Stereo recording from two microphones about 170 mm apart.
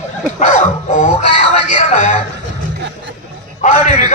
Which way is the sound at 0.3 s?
45° left (ahead or behind).